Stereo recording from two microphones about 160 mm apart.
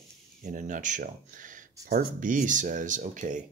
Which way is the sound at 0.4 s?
50° right (ahead or behind).